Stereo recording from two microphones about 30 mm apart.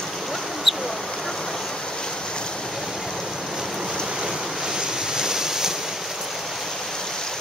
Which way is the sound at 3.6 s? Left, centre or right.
Centre.